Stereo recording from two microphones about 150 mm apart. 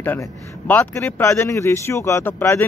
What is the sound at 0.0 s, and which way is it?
Speech, 15° left (ahead or behind).